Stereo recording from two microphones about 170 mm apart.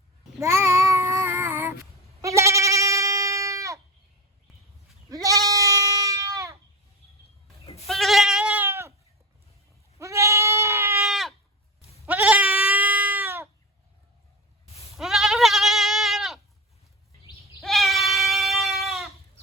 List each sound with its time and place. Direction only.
0.3 s child singing: 15° right (ahead or behind)
2.2 s goat: 15° right (ahead or behind)
5.0 s goat: 20° right (ahead or behind)
7.6 s goat: 35° left (ahead or behind)
7.9 s goat: centre (ahead or behind)
10.0 s goat: 15° right (ahead or behind)
11.0 s sheep: centre (ahead or behind)
12.0 s goat: 10° right (ahead or behind)
14.9 s goat: centre (ahead or behind)
17.6 s goat: centre (ahead or behind)